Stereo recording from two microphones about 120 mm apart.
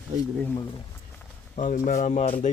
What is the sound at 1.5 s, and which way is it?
Speech, 90° left.